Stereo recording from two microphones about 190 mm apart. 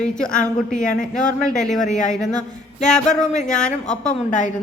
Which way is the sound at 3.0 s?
40° left (ahead or behind).